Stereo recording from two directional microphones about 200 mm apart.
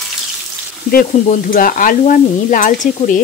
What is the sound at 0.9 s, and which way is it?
Stir, 45° left (ahead or behind).